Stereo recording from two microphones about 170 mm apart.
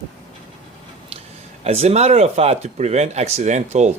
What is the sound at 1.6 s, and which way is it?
Speech, 40° right (ahead or behind).